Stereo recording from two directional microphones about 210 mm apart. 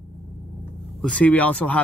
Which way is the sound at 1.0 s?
5° left (ahead or behind).